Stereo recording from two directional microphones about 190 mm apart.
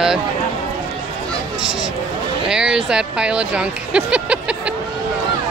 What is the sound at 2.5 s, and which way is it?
Speech, 5° right (ahead or behind).